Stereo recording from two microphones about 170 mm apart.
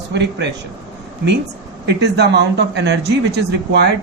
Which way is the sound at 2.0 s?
80° right.